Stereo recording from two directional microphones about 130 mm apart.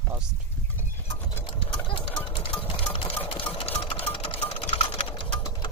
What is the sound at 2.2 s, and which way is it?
Engine, 40° left (ahead or behind).